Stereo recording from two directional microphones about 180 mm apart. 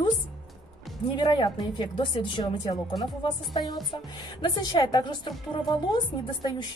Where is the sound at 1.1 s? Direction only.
25° left (ahead or behind).